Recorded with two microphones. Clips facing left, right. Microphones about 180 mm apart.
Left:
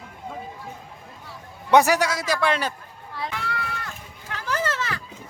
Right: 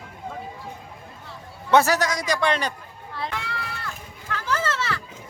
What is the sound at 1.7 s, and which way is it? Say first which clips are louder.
A man's voice: left 1 dB; 15° left (ahead or behind).